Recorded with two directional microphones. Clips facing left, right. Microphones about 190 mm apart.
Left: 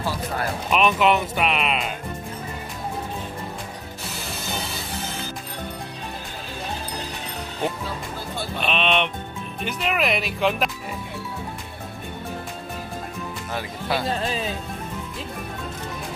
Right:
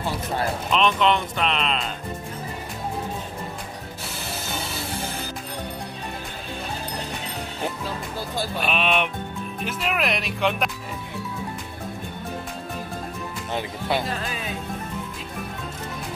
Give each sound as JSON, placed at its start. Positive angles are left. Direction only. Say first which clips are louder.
{"t": 0.7, "sound": "speech", "louder": "left 2 dB", "side_deg": 10}
{"t": 8.5, "sound": "speech", "louder": "left 1 dB", "side_deg": -5}
{"t": 13.5, "sound": "speech", "louder": "right 2 dB", "side_deg": -20}
{"t": 14.2, "sound": "speech", "louder": "left 5 dB", "side_deg": 30}